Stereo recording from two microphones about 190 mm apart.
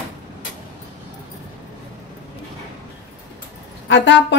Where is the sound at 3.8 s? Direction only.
70° left (ahead or behind).